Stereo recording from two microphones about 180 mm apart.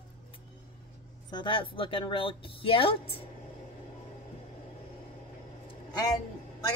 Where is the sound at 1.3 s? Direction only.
30° left (ahead or behind).